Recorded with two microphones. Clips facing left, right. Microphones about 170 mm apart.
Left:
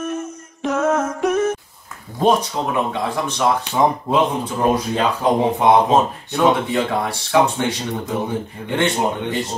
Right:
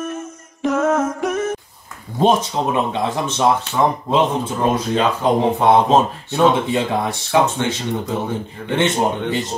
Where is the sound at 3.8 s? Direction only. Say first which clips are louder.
Left 1 dB; 10° left (ahead or behind).